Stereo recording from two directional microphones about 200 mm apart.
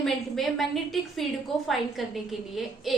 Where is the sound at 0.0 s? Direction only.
Centre (ahead or behind).